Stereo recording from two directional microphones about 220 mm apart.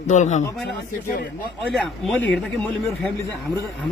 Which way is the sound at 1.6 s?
Centre (ahead or behind).